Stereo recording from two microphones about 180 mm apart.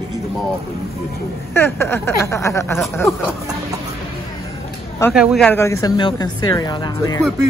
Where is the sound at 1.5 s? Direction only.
15° left (ahead or behind).